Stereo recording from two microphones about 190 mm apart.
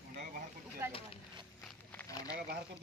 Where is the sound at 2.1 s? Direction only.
20° left (ahead or behind).